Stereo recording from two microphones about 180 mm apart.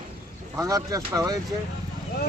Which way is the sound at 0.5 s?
20° right (ahead or behind).